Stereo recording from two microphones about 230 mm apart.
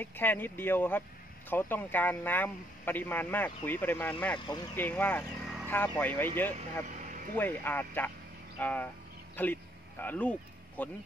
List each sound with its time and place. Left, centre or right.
0.0 s a man's voice: centre
6.9 s a sound: right
7.3 s a man's voice: centre